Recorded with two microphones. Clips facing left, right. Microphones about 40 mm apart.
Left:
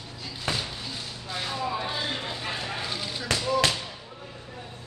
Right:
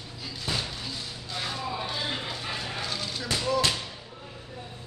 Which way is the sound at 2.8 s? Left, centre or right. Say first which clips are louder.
Even; centre.